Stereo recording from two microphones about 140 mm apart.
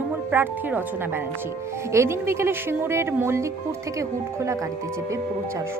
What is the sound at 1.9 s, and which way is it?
Speech, 20° right (ahead or behind).